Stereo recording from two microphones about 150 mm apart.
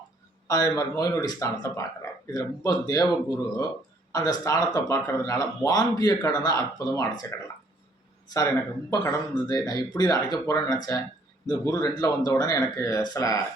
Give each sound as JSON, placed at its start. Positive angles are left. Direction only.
{"t": 0.4, "sound": "speech", "side_deg": 25}